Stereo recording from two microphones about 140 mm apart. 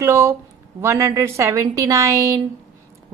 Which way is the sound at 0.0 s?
20° right (ahead or behind).